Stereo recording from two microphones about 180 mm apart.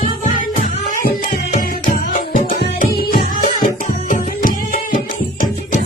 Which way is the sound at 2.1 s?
45° left (ahead or behind).